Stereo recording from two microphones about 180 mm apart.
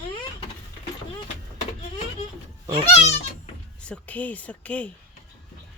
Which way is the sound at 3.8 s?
5° left (ahead or behind).